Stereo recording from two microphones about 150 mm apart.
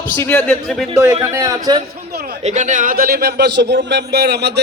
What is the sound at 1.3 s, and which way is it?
Speech, 20° right (ahead or behind).